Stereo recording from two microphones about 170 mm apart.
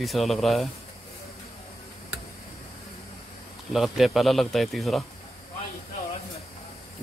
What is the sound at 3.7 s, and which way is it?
Speech, centre (ahead or behind).